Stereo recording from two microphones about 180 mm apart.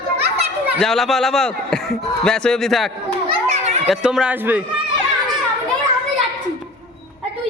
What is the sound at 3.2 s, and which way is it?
Children playing, 40° right (ahead or behind).